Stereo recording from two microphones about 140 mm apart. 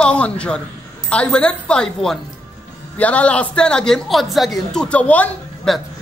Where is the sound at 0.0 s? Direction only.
10° left (ahead or behind).